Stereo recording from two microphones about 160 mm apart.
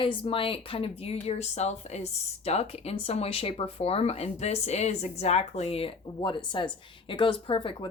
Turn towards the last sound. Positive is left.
turn(degrees=35)  # may be behind; listen again after turning